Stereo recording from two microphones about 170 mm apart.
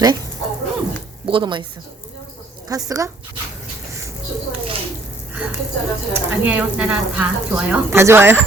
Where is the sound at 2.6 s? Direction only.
20° right (ahead or behind).